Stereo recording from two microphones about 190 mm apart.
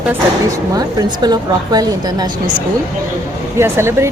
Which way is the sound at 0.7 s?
20° right (ahead or behind).